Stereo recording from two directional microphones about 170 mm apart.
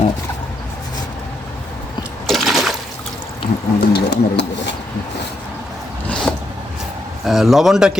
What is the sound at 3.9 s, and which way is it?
Speech, 80° left.